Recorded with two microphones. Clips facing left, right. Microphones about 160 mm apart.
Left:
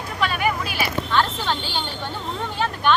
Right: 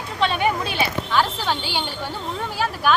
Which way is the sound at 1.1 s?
10° right (ahead or behind).